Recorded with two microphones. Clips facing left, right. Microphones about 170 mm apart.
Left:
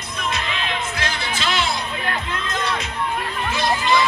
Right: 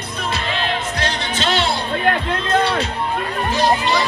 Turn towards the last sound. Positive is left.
turn(degrees=-35)  # may be behind; listen again after turning